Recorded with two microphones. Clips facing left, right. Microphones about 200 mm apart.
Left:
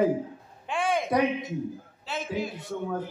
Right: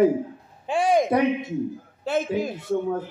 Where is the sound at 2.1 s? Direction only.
50° right (ahead or behind).